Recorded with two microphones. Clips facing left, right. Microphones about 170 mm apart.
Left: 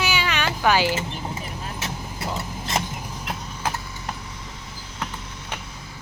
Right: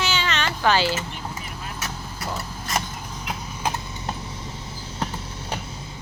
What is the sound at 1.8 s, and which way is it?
Vehicle, 20° left (ahead or behind).